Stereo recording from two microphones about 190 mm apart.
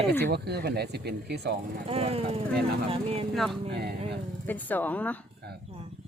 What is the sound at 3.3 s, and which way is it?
A woman's voice, centre (ahead or behind).